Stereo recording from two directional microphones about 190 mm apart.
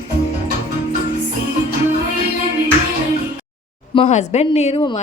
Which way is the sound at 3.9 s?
35° left (ahead or behind).